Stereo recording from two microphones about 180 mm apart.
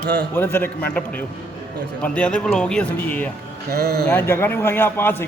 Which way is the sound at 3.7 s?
60° right (ahead or behind).